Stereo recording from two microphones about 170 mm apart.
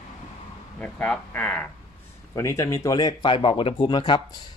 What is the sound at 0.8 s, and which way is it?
Speech, 10° left (ahead or behind).